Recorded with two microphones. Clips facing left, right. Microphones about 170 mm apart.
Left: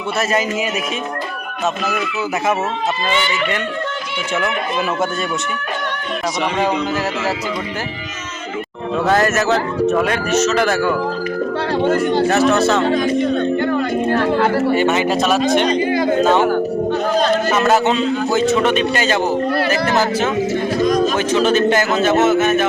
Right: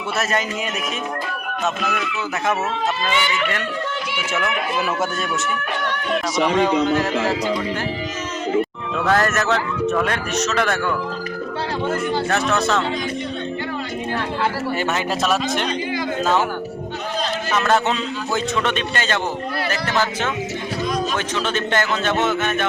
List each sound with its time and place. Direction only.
3.1 s speech: 10° right (ahead or behind)
6.8 s a man's voice: 5° left (ahead or behind)
9.0 s a man's voice: 5° left (ahead or behind)
12.3 s a man's voice: 5° left (ahead or behind)
12.8 s music: 50° left (ahead or behind)
14.8 s a man's voice: centre (ahead or behind)
15.8 s a sound: 55° left (ahead or behind)
17.5 s a man's voice: 5° left (ahead or behind)
20.7 s a sound: 45° left (ahead or behind)
21.4 s a man's voice: 10° left (ahead or behind)